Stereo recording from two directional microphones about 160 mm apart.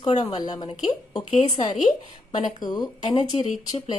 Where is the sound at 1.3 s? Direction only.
45° left (ahead or behind).